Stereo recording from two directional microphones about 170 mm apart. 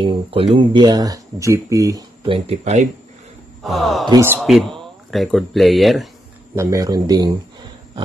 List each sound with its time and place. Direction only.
0.0 s speech: 30° right (ahead or behind)
2.2 s speech: 35° right (ahead or behind)
3.6 s speech: centre (ahead or behind)
6.5 s speech: 15° right (ahead or behind)